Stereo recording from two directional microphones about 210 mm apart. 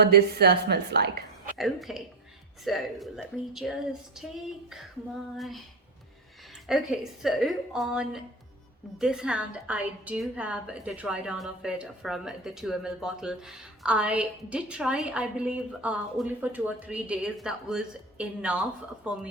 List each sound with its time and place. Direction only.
0.0 s a woman's voice: 50° right (ahead or behind)
1.5 s a woman's voice: centre (ahead or behind)
5.4 s a woman's voice: centre (ahead or behind)
6.7 s a woman's voice: centre (ahead or behind)